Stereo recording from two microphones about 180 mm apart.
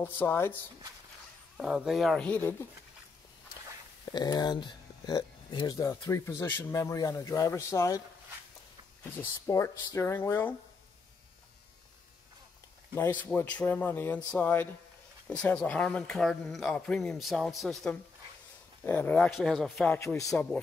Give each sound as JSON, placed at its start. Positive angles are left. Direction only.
{"t": 0.0, "sound": "speech", "side_deg": 10}
{"t": 1.6, "sound": "speech", "side_deg": -5}
{"t": 4.1, "sound": "speech", "side_deg": 20}
{"t": 9.2, "sound": "speech", "side_deg": 15}
{"t": 12.9, "sound": "speech", "side_deg": 10}